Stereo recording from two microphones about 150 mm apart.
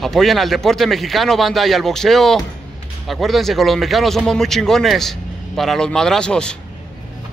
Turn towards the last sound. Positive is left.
turn(degrees=5)  # may be behind; listen again after turning